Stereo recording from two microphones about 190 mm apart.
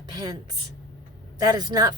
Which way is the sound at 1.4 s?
20° right (ahead or behind).